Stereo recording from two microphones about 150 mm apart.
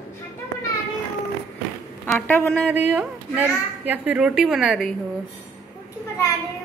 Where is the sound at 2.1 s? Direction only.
10° left (ahead or behind).